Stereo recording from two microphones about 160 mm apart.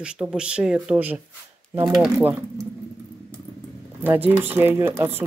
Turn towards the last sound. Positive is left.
turn(degrees=-15)  # may be behind; listen again after turning